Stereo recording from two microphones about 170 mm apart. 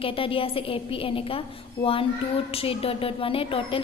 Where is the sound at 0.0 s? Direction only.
30° left (ahead or behind).